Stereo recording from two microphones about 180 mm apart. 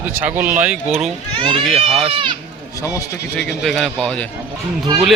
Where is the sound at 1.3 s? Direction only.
30° right (ahead or behind).